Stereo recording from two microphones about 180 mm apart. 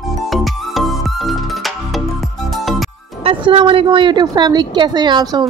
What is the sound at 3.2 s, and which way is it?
A woman's voice, 30° right (ahead or behind).